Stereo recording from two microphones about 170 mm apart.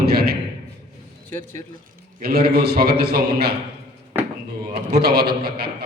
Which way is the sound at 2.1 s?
65° right (ahead or behind).